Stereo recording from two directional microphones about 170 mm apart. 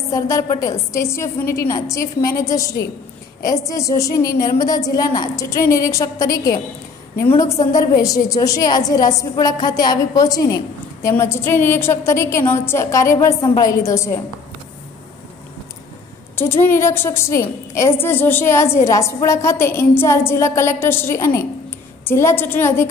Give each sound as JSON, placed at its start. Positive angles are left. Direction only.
{"t": 0.1, "sound": "a woman's voice", "side_deg": 20}
{"t": 7.7, "sound": "a woman's voice", "side_deg": 20}
{"t": 16.3, "sound": "a woman's voice", "side_deg": 15}